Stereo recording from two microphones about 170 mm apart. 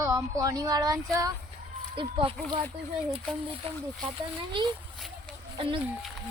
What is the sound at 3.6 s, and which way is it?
Speech, 35° right (ahead or behind).